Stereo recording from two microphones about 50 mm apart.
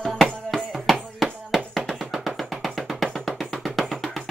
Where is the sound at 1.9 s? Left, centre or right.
Centre.